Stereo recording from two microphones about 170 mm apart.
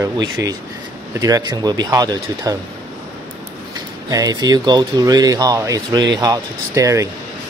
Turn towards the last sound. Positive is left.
turn(degrees=-20)  # may be behind; listen again after turning